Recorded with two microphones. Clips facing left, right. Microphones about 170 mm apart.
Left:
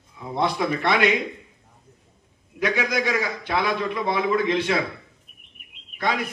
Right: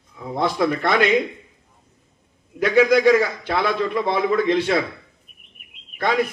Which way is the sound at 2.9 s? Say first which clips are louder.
Right 9 dB; 45° right (ahead or behind).